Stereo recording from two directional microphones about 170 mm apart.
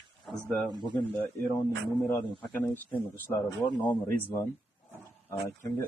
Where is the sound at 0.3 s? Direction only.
Centre (ahead or behind).